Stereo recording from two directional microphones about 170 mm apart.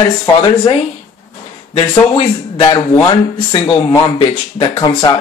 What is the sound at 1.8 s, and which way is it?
A man's voice, 35° left (ahead or behind).